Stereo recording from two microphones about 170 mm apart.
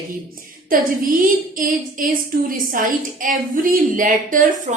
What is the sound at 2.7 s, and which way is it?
A woman's voice, 50° right (ahead or behind).